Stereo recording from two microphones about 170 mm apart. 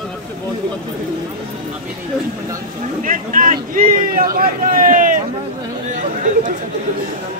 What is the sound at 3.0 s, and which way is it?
A man's voice, 50° right (ahead or behind).